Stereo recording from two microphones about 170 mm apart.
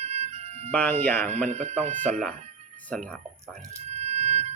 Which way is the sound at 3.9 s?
40° right (ahead or behind).